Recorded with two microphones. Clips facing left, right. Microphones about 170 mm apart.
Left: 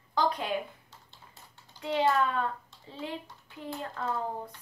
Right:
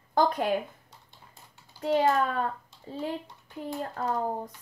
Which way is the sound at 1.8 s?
40° right (ahead or behind).